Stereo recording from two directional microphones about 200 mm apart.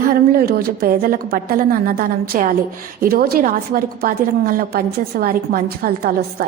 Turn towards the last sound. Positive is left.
turn(degrees=-50)  # may be behind; listen again after turning